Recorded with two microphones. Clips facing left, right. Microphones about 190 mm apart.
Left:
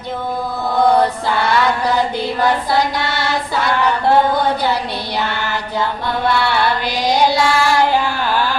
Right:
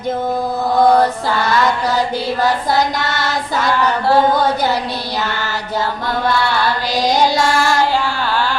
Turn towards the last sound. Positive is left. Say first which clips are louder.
# even
turn(degrees=-45)  # may be behind; listen again after turning